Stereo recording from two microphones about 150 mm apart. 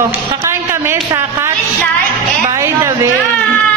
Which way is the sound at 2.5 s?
20° right (ahead or behind).